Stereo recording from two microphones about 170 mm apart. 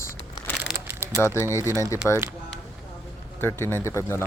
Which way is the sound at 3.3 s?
15° left (ahead or behind).